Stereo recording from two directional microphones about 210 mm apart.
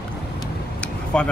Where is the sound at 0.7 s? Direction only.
5° left (ahead or behind).